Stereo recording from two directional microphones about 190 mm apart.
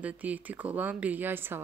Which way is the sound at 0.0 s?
10° right (ahead or behind).